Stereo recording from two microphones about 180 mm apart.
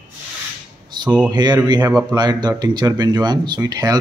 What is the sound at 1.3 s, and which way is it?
Speech, 25° right (ahead or behind).